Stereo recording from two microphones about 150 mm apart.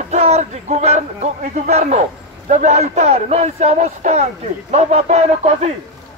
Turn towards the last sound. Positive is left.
turn(degrees=-45)  # may be behind; listen again after turning